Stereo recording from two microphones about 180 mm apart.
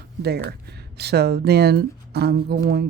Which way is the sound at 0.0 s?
60° right (ahead or behind).